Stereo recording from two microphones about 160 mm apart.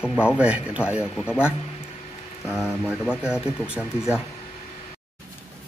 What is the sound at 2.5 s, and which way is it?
Speech, centre (ahead or behind).